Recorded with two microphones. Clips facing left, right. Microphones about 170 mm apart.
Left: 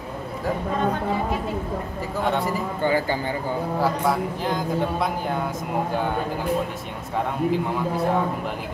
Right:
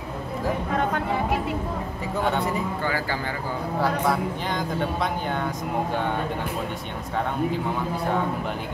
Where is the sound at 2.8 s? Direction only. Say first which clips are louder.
Left 5 dB; 20° left (ahead or behind).